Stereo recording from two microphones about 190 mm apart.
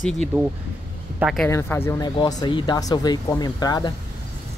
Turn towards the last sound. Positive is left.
turn(degrees=20)  # may be behind; listen again after turning